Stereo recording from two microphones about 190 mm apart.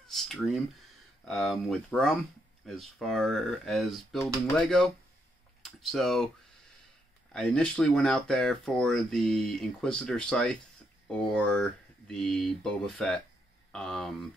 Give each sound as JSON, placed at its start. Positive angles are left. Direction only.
{"t": 0.1, "sound": "speech", "side_deg": 0}
{"t": 7.3, "sound": "speech", "side_deg": 5}